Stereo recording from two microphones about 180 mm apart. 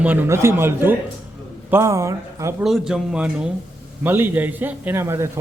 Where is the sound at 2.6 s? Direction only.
Centre (ahead or behind).